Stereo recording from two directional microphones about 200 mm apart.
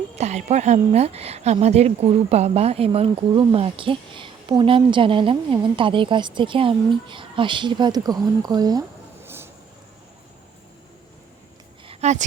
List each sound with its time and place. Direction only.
0.2 s speech: 35° right (ahead or behind)
9.2 s vehicle: 10° right (ahead or behind)
11.9 s a sound: 35° right (ahead or behind)